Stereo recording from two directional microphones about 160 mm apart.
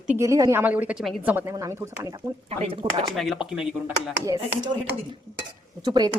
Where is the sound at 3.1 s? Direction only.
Centre (ahead or behind).